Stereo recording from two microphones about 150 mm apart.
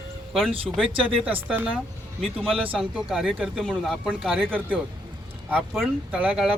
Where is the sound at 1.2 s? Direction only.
10° right (ahead or behind).